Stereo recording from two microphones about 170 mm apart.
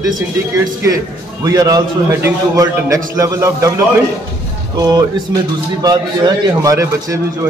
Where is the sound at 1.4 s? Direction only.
20° right (ahead or behind).